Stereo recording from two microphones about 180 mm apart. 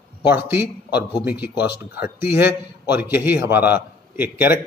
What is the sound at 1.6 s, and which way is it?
Speech, 60° left (ahead or behind).